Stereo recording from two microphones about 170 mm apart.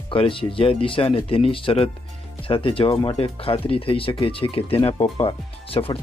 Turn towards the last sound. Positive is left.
turn(degrees=30)  # may be behind; listen again after turning